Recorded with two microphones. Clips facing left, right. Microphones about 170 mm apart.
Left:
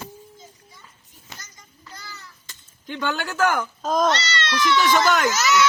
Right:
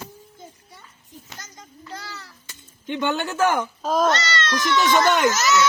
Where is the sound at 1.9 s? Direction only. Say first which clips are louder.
Right 5 dB; 60° right (ahead or behind).